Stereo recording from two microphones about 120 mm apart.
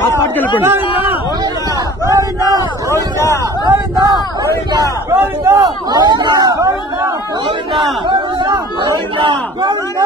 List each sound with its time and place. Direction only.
2.0 s speech: 30° right (ahead or behind)
2.9 s speech: 25° left (ahead or behind)
3.6 s speech: 30° right (ahead or behind)
5.1 s speech: 20° right (ahead or behind)
7.4 s speech: 45° right (ahead or behind)